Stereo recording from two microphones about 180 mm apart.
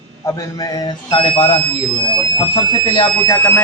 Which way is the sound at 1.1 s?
30° left (ahead or behind).